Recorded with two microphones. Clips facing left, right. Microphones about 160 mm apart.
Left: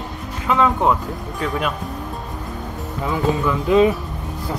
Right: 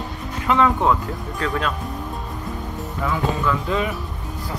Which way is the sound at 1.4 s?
20° left (ahead or behind).